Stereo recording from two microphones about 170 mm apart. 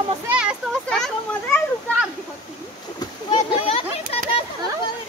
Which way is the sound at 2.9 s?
25° left (ahead or behind).